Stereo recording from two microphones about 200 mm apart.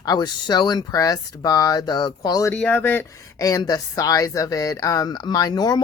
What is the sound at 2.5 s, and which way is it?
Speech, 5° left (ahead or behind).